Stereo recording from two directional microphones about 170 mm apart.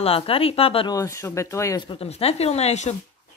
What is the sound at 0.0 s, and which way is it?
Speech, 35° left (ahead or behind).